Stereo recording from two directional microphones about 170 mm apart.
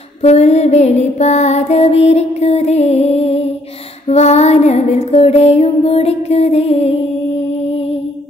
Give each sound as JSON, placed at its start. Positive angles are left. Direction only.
{"t": 0.2, "sound": "music", "side_deg": 40}